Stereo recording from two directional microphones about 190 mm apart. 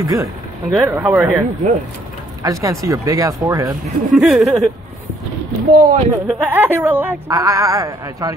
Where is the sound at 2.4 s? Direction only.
15° right (ahead or behind).